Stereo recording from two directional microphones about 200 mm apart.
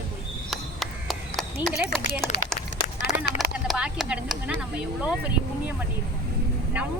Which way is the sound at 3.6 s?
5° right (ahead or behind).